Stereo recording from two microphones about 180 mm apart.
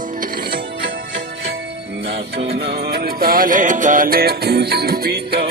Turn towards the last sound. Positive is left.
turn(degrees=-60)  # may be behind; listen again after turning